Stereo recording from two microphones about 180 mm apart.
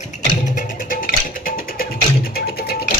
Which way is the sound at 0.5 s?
50° left (ahead or behind).